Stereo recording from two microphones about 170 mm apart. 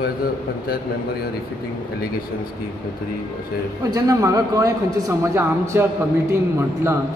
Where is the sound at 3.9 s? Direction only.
20° right (ahead or behind).